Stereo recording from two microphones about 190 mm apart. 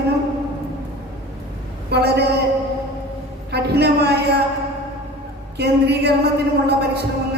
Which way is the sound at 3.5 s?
60° right (ahead or behind).